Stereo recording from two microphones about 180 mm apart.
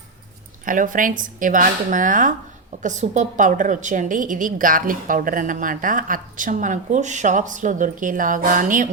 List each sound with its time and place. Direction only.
0.6 s a woman's voice: 50° right (ahead or behind)